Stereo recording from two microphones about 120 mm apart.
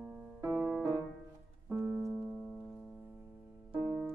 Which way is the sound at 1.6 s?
15° right (ahead or behind).